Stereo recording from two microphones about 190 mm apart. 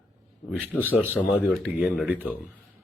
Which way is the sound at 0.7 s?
10° left (ahead or behind).